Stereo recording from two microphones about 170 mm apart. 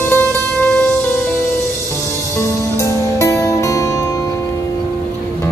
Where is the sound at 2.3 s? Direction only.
15° left (ahead or behind).